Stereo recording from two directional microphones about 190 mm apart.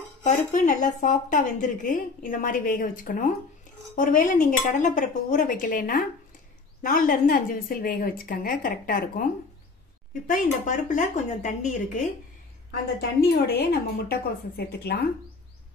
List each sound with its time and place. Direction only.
0.2 s a woman's voice: 40° left (ahead or behind)
10.2 s a woman's voice: 45° left (ahead or behind)
13.2 s a woman's voice: 60° left (ahead or behind)